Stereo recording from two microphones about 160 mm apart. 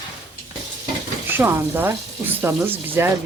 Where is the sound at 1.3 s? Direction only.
15° right (ahead or behind).